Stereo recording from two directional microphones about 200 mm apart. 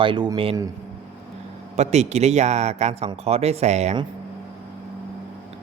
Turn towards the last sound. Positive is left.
turn(degrees=-30)  # may be behind; listen again after turning